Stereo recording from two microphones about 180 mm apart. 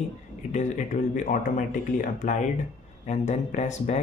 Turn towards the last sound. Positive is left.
turn(degrees=40)  # may be behind; listen again after turning